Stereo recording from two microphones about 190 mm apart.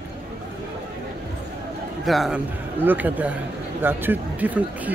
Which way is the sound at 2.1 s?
Centre (ahead or behind).